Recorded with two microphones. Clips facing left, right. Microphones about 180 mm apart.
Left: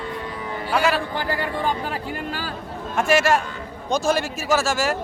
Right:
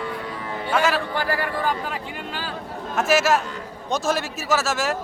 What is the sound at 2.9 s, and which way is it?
Speech, centre (ahead or behind).